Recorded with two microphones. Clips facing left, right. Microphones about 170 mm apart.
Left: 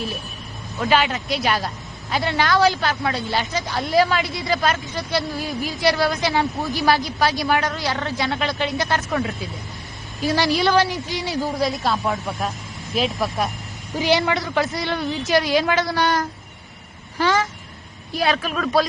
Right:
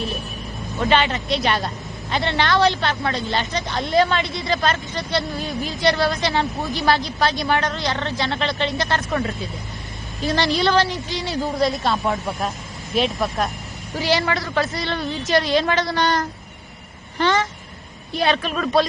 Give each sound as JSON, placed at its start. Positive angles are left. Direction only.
{"t": 0.8, "sound": "a woman's voice", "side_deg": 5}
{"t": 10.8, "sound": "speech", "side_deg": -20}
{"t": 11.2, "sound": "a woman's voice", "side_deg": 0}
{"t": 13.9, "sound": "a man's voice", "side_deg": 15}
{"t": 15.4, "sound": "a woman's voice", "side_deg": 5}